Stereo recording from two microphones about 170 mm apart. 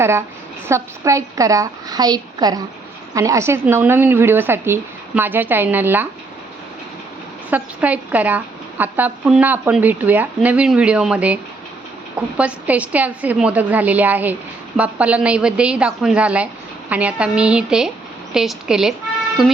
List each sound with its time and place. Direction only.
0.0 s a woman's voice: 15° right (ahead or behind)
7.5 s speech: 10° right (ahead or behind)
12.4 s a woman's voice: 5° right (ahead or behind)